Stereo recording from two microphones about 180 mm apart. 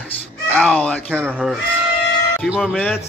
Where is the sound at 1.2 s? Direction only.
5° right (ahead or behind).